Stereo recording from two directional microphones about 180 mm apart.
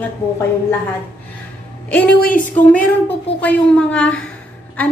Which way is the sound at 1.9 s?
10° left (ahead or behind).